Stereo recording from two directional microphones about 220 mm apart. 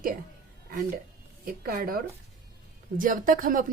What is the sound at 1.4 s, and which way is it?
Speech, 45° right (ahead or behind).